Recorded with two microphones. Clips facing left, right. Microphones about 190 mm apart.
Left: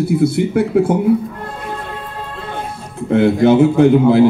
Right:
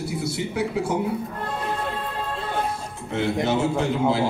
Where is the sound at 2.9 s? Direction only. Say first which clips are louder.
Left 13 dB; 60° left (ahead or behind).